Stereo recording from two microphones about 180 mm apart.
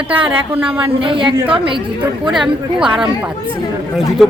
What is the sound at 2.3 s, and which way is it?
Speech, 5° right (ahead or behind).